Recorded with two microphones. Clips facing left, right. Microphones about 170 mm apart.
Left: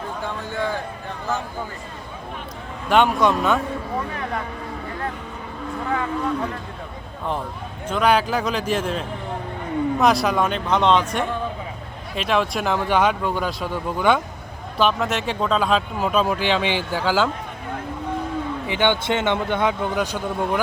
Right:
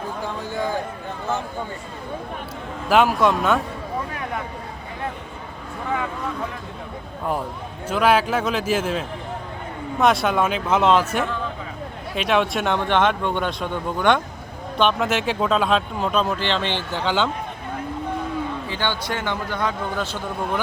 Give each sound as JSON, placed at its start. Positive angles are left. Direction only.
{"t": 2.9, "sound": "speech", "side_deg": 0}
{"t": 7.9, "sound": "speech", "side_deg": -5}
{"t": 18.7, "sound": "a man's voice", "side_deg": 20}